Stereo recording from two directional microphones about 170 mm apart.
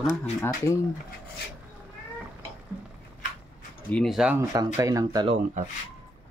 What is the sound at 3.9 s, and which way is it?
Speech, centre (ahead or behind).